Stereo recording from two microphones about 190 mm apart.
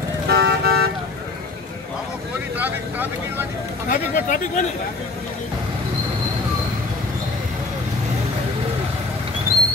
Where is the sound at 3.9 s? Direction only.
40° left (ahead or behind).